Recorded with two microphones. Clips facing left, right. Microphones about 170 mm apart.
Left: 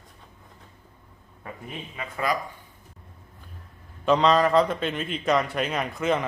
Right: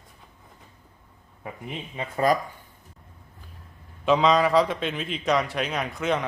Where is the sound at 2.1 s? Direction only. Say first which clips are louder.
Right 5 dB; 40° right (ahead or behind).